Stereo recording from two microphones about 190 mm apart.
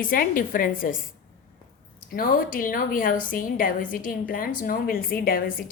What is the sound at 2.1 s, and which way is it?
A woman's voice, 50° left (ahead or behind).